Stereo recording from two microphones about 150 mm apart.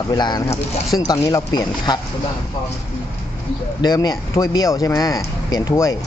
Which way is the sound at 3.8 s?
25° left (ahead or behind).